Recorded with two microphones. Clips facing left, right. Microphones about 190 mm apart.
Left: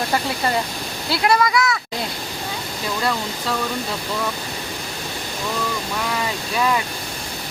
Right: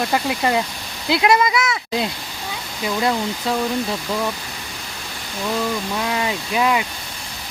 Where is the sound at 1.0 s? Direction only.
20° right (ahead or behind).